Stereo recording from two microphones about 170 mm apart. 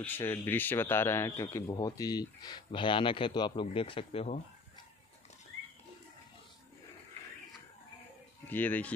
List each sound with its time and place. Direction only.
0.0 s speech: 15° left (ahead or behind); by 4.4 s 35° left (ahead or behind)
8.5 s speech: 10° left (ahead or behind)